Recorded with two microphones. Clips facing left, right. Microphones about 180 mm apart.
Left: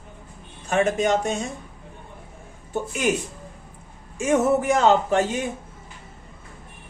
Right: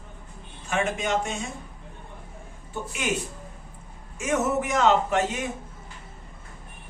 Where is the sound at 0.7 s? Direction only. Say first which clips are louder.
Left 5 dB; 40° left (ahead or behind).